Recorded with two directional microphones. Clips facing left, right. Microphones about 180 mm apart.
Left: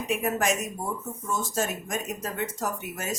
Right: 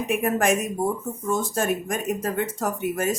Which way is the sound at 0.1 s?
55° right (ahead or behind).